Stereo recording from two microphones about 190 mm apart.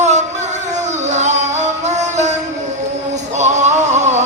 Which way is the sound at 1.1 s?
35° right (ahead or behind).